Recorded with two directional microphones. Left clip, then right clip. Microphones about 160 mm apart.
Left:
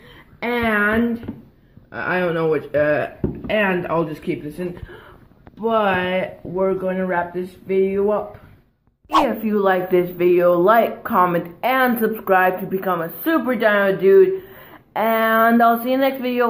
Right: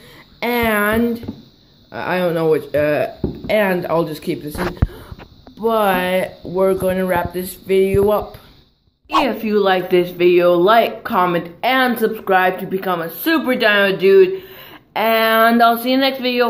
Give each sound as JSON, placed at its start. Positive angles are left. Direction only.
{"t": 0.4, "sound": "a sound", "side_deg": -20}
{"t": 1.9, "sound": "speech", "side_deg": -40}
{"t": 2.2, "sound": "speech", "side_deg": -20}
{"t": 2.5, "sound": "speech", "side_deg": -35}
{"t": 3.5, "sound": "speech", "side_deg": -15}
{"t": 5.7, "sound": "speech", "side_deg": -25}
{"t": 9.1, "sound": "speech", "side_deg": -5}